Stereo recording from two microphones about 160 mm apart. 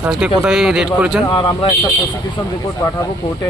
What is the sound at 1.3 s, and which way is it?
Speech, 30° left (ahead or behind).